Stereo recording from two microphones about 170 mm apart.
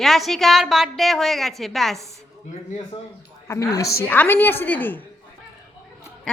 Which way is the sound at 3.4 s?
20° left (ahead or behind).